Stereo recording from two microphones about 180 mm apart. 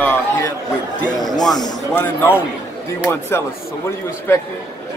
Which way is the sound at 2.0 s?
10° left (ahead or behind).